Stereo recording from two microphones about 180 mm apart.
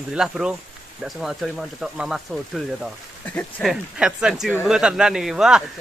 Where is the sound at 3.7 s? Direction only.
5° right (ahead or behind).